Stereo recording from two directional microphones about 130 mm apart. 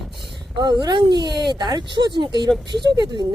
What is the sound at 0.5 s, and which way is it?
Speech, 35° right (ahead or behind).